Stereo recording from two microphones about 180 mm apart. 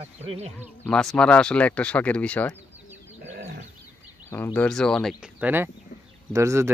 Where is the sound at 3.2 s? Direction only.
75° right (ahead or behind).